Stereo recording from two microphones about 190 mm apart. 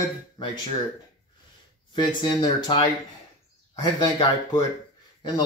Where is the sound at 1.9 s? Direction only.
25° left (ahead or behind).